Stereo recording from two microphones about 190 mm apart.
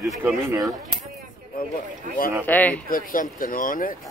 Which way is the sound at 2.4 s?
10° left (ahead or behind).